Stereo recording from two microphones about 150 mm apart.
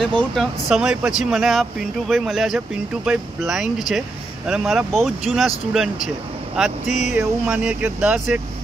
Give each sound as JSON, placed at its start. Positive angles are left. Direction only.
{"t": 0.0, "sound": "speech", "side_deg": 0}
{"t": 6.9, "sound": "speech", "side_deg": 50}
{"t": 7.2, "sound": "speech", "side_deg": -5}